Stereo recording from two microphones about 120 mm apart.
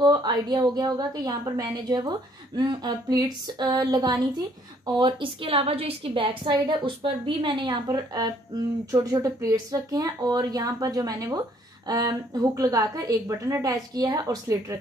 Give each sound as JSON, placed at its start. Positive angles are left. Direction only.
{"t": 0.0, "sound": "a woman's voice", "side_deg": -35}